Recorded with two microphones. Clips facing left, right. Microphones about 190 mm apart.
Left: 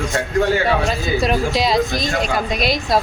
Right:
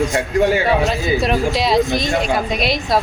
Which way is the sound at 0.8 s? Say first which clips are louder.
Right 1 dB; centre (ahead or behind).